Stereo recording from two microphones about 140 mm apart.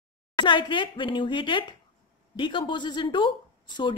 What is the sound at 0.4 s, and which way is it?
A woman's voice, 35° left (ahead or behind).